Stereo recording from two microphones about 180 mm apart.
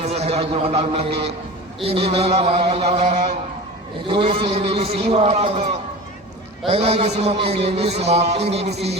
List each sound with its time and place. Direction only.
0.0 s a man's voice: 35° right (ahead or behind)
6.7 s a man's voice: 35° right (ahead or behind)